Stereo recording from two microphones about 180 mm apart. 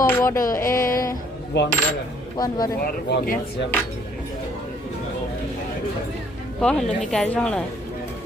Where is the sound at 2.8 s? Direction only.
65° left (ahead or behind).